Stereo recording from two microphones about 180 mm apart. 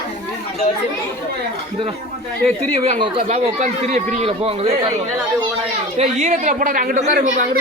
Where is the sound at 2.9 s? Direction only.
30° right (ahead or behind).